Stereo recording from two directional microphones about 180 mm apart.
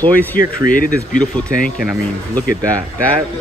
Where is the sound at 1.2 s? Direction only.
5° left (ahead or behind).